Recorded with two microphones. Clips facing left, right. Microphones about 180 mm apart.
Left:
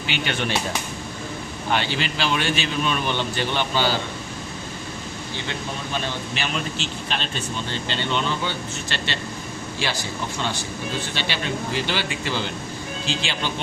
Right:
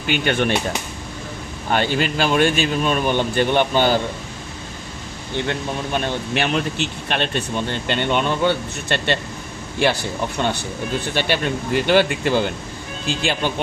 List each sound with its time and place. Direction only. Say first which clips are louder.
0.1 s speech: right 7 dB; 55° right (ahead or behind)
1.7 s speech: right 5 dB; 50° right (ahead or behind)
5.5 s speech: right 5 dB; 55° right (ahead or behind)